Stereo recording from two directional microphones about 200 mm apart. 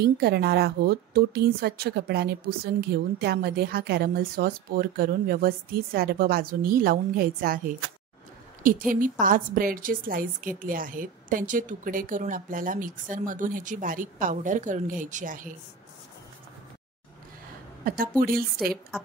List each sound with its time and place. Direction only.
0.0 s a woman's voice: 55° right (ahead or behind)
17.8 s a woman's voice: 45° right (ahead or behind)